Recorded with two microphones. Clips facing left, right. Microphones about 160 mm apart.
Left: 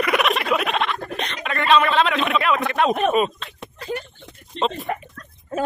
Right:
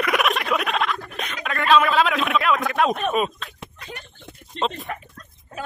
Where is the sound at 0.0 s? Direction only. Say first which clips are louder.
Left 2 dB; centre (ahead or behind).